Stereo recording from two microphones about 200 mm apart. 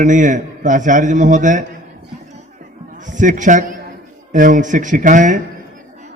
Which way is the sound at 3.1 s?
40° right (ahead or behind).